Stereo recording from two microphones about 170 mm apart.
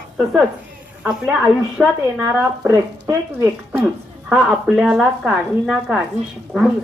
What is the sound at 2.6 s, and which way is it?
Speech, 15° right (ahead or behind).